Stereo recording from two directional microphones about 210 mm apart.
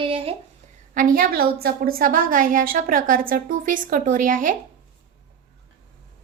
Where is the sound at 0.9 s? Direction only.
40° right (ahead or behind).